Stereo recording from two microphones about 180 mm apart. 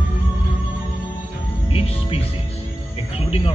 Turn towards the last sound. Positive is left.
turn(degrees=35)  # may be behind; listen again after turning